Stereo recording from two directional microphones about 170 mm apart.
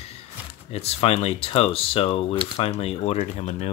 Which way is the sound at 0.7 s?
35° left (ahead or behind).